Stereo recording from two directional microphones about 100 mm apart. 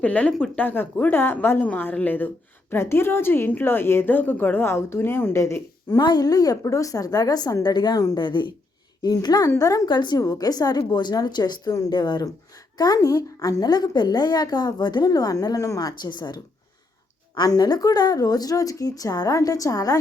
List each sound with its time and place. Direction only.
0.0 s a woman's voice: 15° left (ahead or behind); by 6.0 s 30° left (ahead or behind)
6.0 s a woman's voice: 45° left (ahead or behind)